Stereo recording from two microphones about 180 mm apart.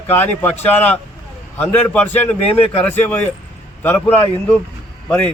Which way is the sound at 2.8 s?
10° left (ahead or behind).